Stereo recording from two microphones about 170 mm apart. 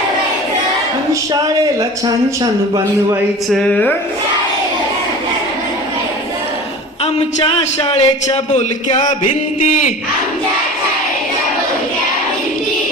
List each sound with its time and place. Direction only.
1.8 s a man's voice: 20° right (ahead or behind)
3.5 s speech: 5° left (ahead or behind)
7.0 s a man's voice: 35° left (ahead or behind)